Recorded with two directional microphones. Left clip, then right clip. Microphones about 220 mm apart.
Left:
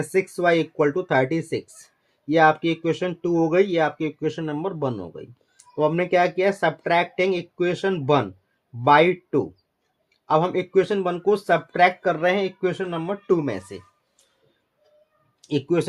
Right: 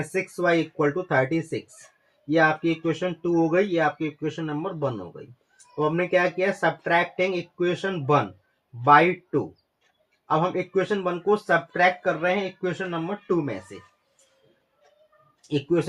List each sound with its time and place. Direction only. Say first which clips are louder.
0.1 s speech: left 3 dB; 40° left (ahead or behind)
15.4 s speech: left 1 dB; 35° left (ahead or behind)